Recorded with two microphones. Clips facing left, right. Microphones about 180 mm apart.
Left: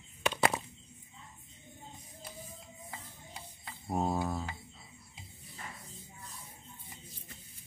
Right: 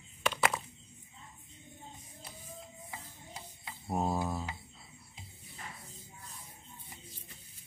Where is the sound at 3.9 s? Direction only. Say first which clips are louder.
Left 1 dB; centre (ahead or behind).